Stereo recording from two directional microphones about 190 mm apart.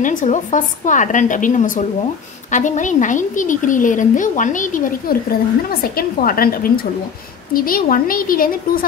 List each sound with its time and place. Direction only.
0.0 s a woman's voice: 40° left (ahead or behind)